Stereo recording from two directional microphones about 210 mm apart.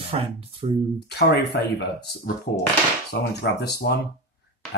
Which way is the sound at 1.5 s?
50° left (ahead or behind).